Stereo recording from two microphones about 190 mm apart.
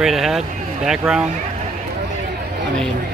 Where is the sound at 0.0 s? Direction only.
Centre (ahead or behind).